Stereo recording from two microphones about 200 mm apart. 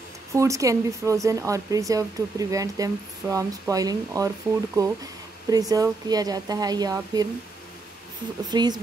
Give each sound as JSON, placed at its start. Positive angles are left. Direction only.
{"t": 0.3, "sound": "speech", "side_deg": -15}
{"t": 8.5, "sound": "speech", "side_deg": -20}